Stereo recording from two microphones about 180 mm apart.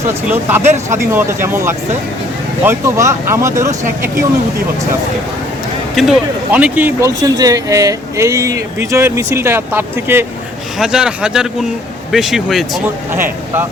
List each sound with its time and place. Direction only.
0.1 s speech: 10° right (ahead or behind)
6.0 s speech: 5° right (ahead or behind)
13.1 s speech: 15° right (ahead or behind)